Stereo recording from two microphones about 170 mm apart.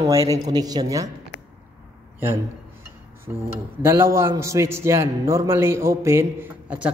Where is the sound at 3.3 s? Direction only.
10° right (ahead or behind).